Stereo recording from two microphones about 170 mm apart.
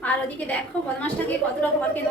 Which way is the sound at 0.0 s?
10° left (ahead or behind).